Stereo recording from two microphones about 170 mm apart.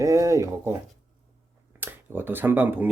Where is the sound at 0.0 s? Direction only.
20° right (ahead or behind).